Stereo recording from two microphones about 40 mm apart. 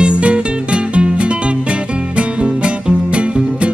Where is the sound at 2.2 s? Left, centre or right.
Right.